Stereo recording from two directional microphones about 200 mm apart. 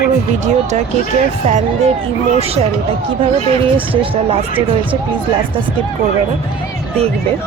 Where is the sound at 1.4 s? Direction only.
35° right (ahead or behind).